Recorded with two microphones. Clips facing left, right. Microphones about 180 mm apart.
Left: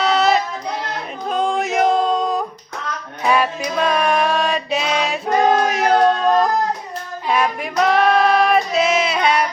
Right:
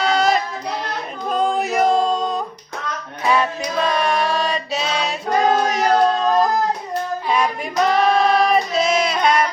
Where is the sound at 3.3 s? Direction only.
10° left (ahead or behind).